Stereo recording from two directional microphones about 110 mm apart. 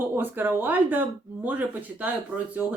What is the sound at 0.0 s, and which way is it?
Speech, 20° right (ahead or behind).